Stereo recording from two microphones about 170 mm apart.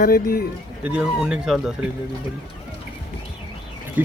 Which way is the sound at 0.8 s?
5° right (ahead or behind).